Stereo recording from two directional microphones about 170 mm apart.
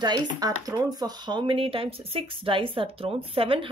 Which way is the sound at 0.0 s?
25° right (ahead or behind).